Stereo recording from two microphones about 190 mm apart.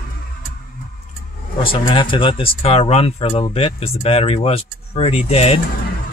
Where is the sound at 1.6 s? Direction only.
25° left (ahead or behind).